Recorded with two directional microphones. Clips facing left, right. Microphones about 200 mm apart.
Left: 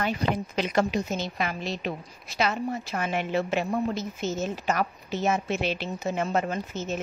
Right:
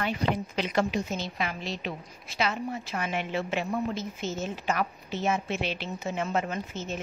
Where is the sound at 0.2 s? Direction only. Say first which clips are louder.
Left 2 dB; 40° left (ahead or behind).